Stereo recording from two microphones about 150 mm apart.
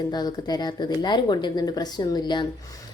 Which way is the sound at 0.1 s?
25° left (ahead or behind).